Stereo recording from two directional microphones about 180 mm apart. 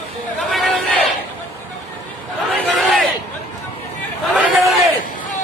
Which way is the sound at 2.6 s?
Centre (ahead or behind).